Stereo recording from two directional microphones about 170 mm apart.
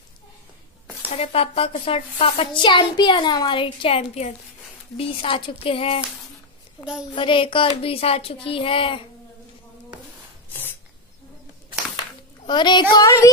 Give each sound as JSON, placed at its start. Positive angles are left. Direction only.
{"t": 1.1, "sound": "a woman's voice", "side_deg": 35}
{"t": 7.2, "sound": "a woman's voice", "side_deg": 30}
{"t": 10.5, "sound": "a sound", "side_deg": 10}
{"t": 12.4, "sound": "a child's voice", "side_deg": 25}
{"t": 12.9, "sound": "child singing", "side_deg": 20}